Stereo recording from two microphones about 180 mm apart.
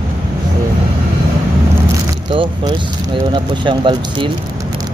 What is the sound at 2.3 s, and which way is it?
Speech, 25° right (ahead or behind).